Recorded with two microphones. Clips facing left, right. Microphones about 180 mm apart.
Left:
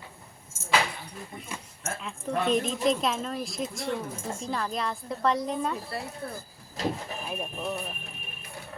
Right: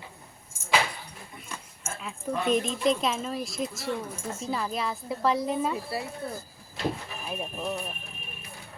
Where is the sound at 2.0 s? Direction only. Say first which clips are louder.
Even; centre (ahead or behind).